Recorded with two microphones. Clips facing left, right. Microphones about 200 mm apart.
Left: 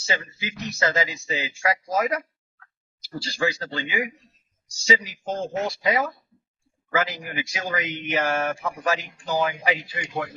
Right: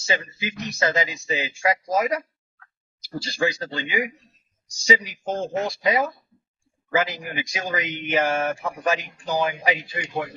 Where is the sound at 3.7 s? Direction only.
15° right (ahead or behind).